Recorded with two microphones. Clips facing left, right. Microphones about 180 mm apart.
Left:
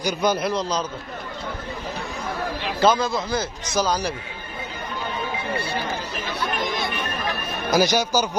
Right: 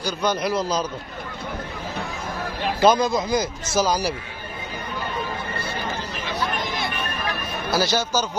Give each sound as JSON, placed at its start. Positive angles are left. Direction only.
{"t": 0.0, "sound": "a man's voice", "side_deg": 10}
{"t": 0.4, "sound": "a man's voice", "side_deg": -5}
{"t": 2.8, "sound": "a man's voice", "side_deg": -15}
{"t": 7.7, "sound": "a man's voice", "side_deg": 15}